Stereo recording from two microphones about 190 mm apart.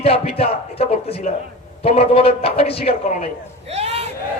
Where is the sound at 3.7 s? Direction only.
35° right (ahead or behind).